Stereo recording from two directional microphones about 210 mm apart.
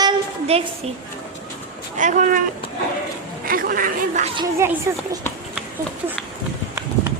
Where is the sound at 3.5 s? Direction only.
40° right (ahead or behind).